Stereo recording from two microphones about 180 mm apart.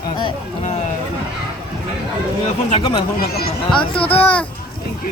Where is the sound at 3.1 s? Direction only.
60° left (ahead or behind).